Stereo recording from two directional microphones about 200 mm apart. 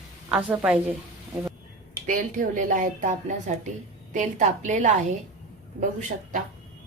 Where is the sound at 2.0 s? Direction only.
40° right (ahead or behind).